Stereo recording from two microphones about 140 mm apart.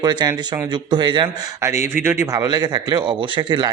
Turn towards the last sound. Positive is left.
turn(degrees=-30)  # may be behind; listen again after turning